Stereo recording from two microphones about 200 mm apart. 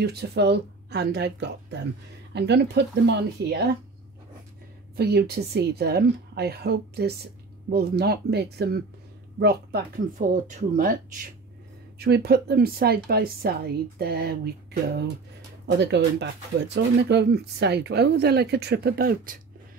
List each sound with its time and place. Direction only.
0.0 s speech: 55° right (ahead or behind)
4.9 s speech: 55° right (ahead or behind)
10.3 s speech: 40° right (ahead or behind)
12.0 s speech: 55° right (ahead or behind)